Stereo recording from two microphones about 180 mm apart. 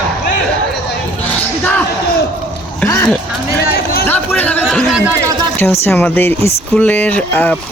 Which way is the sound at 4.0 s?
10° left (ahead or behind).